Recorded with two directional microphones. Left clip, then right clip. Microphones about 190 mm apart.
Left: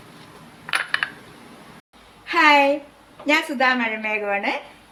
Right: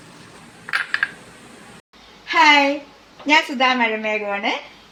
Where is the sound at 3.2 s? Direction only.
35° right (ahead or behind).